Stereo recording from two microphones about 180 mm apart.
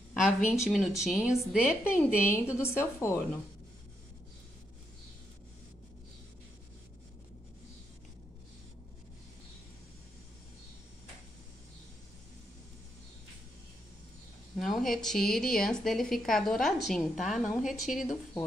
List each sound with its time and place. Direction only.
0.2 s a woman's voice: centre (ahead or behind)
1.7 s a woman's voice: 10° left (ahead or behind)
14.6 s a woman's voice: centre (ahead or behind)